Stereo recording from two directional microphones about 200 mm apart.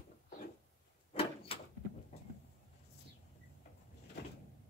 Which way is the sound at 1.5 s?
30° left (ahead or behind).